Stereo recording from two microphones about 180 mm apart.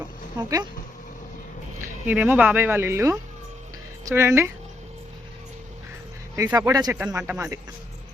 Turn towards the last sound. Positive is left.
turn(degrees=-15)  # may be behind; listen again after turning